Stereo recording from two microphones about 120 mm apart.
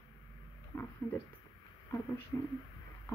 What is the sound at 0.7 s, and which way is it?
Speech, 20° left (ahead or behind).